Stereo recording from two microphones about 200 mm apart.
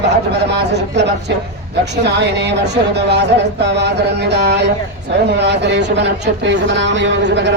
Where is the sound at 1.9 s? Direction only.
60° right (ahead or behind).